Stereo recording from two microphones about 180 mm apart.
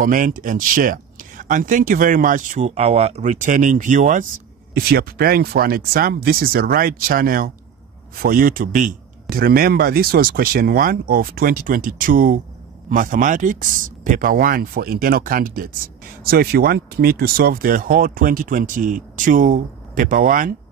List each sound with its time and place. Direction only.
0.0 s speech: 50° right (ahead or behind)
4.7 s speech: 60° right (ahead or behind)